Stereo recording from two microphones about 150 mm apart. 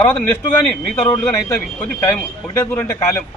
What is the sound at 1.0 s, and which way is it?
Speech, 15° left (ahead or behind).